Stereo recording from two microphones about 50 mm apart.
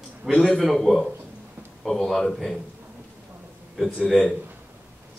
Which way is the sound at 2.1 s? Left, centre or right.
Centre.